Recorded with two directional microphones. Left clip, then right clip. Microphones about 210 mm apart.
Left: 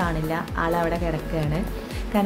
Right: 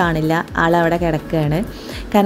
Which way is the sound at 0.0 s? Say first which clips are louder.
Right 9 dB; 35° right (ahead or behind).